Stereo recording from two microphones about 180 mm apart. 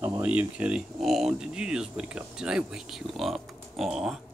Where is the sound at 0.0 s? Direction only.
10° right (ahead or behind).